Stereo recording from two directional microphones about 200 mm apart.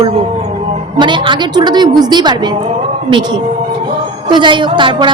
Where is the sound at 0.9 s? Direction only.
25° right (ahead or behind).